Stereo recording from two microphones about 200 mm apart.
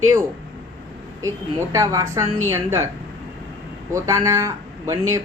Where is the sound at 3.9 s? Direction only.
15° right (ahead or behind).